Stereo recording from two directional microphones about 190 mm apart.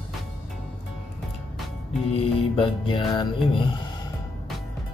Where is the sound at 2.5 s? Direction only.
30° left (ahead or behind).